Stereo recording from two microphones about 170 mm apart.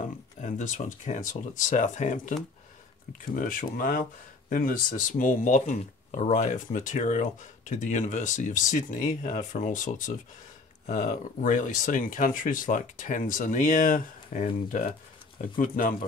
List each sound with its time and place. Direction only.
0.4 s speech: 45° left (ahead or behind)
3.3 s speech: 55° left (ahead or behind)